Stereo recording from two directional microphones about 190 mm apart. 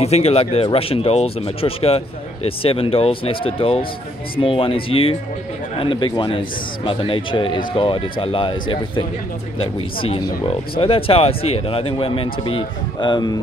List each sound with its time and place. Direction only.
0.0 s a man's voice: 35° left (ahead or behind)
10.0 s a man's voice: 30° left (ahead or behind)